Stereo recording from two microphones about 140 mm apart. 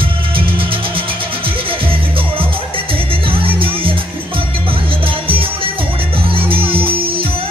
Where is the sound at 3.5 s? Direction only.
40° right (ahead or behind).